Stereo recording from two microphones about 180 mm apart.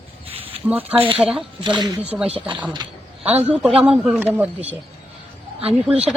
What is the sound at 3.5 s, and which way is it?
Speech, centre (ahead or behind).